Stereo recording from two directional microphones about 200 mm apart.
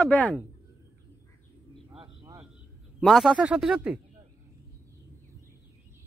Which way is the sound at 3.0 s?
Centre (ahead or behind).